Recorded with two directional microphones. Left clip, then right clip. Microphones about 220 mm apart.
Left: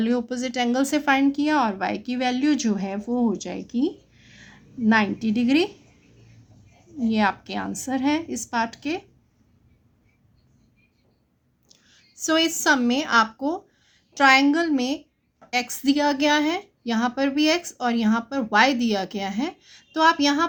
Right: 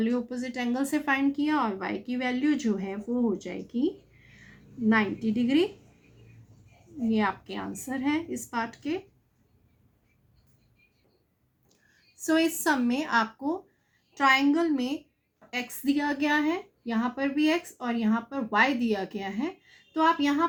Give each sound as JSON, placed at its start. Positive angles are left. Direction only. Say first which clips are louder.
{"t": 0.0, "sound": "a woman's voice", "louder": "left 5 dB", "side_deg": 50}
{"t": 7.1, "sound": "a woman's voice", "louder": "left 5 dB", "side_deg": 50}
{"t": 12.2, "sound": "a woman's voice", "louder": "left 5 dB", "side_deg": 40}